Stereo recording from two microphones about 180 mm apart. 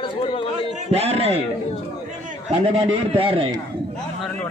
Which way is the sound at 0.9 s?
35° right (ahead or behind).